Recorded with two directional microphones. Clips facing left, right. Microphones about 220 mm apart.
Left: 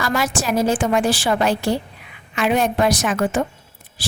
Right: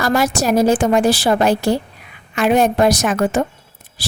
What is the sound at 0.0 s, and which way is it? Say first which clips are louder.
A woman's voice: right 5 dB; 40° right (ahead or behind).